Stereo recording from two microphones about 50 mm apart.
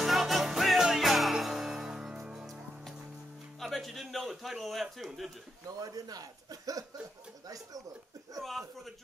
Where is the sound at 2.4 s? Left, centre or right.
Centre.